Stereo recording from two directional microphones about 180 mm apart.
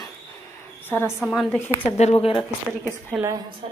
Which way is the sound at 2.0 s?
35° left (ahead or behind).